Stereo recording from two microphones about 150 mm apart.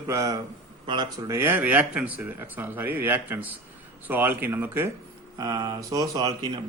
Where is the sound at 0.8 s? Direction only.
30° right (ahead or behind).